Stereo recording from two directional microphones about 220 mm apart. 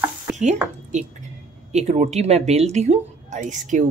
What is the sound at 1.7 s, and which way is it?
Speech, 30° right (ahead or behind).